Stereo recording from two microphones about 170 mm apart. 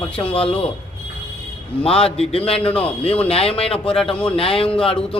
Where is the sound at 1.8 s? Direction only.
35° left (ahead or behind).